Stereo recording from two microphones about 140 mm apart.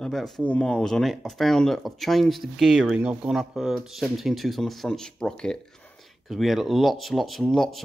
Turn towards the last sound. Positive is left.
turn(degrees=0)  # may be behind; listen again after turning